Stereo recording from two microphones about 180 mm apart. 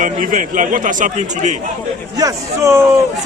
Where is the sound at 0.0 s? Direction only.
45° right (ahead or behind).